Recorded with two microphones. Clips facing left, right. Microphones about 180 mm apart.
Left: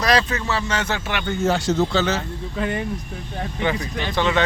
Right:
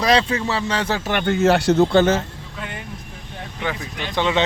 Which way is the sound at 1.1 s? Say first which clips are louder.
Right 5 dB; 70° right (ahead or behind).